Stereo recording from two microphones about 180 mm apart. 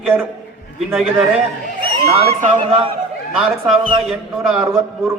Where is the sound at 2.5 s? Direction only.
30° right (ahead or behind).